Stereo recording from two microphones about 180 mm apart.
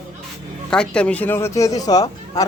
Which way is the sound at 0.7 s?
5° left (ahead or behind).